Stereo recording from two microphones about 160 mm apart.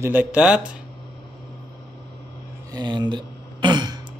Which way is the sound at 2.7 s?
25° right (ahead or behind).